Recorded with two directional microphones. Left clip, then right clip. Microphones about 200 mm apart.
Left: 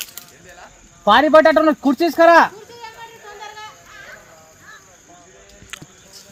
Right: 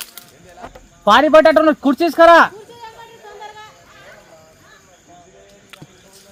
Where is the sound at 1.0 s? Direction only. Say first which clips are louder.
Right 2 dB; centre (ahead or behind).